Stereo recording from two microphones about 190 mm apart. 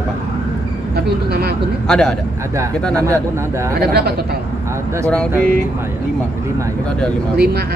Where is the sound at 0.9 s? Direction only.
55° right (ahead or behind).